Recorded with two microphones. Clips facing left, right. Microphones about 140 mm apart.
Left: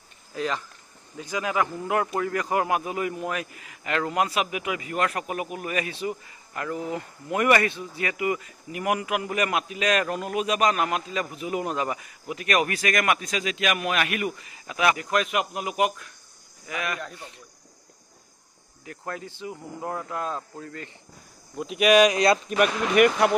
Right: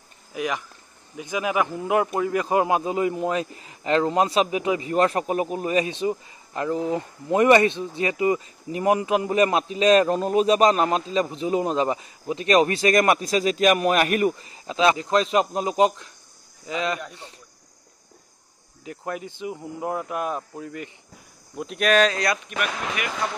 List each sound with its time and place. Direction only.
0.3 s a man's voice: 15° right (ahead or behind)
18.9 s speech: 20° right (ahead or behind)
21.5 s speech: 5° left (ahead or behind); by 22.4 s 20° left (ahead or behind)
22.6 s speech: 50° left (ahead or behind)